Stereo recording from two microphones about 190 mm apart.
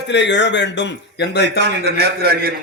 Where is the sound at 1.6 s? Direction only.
60° right (ahead or behind).